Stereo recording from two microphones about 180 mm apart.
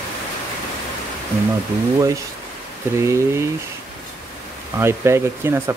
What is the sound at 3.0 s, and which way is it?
Speech, 15° right (ahead or behind).